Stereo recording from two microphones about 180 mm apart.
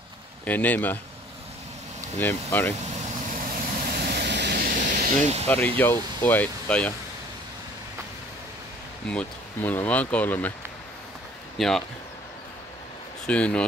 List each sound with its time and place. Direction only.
0.5 s speech: 10° left (ahead or behind)
2.1 s speech: 10° left (ahead or behind)
3.3 s vehicle: 50° right (ahead or behind)
5.5 s speech: 10° left (ahead or behind)
9.1 s speech: 5° left (ahead or behind)
11.5 s speech: centre (ahead or behind)
13.3 s speech: 5° left (ahead or behind)